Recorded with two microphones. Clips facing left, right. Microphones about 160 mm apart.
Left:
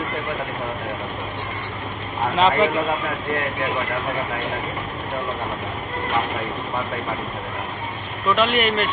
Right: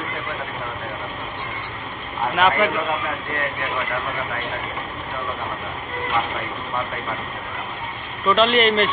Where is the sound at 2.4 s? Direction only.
25° left (ahead or behind).